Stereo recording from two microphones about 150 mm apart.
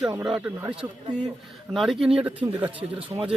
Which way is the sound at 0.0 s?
5° right (ahead or behind).